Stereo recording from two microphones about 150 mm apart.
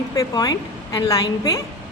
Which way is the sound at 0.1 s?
25° left (ahead or behind).